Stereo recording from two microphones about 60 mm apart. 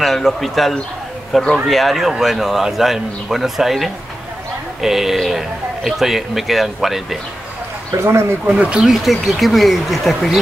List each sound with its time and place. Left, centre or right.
0.0 s speech: centre
8.0 s speech: right
8.5 s speech: right
8.8 s speech: centre